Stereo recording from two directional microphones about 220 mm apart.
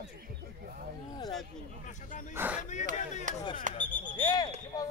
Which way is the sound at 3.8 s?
5° left (ahead or behind).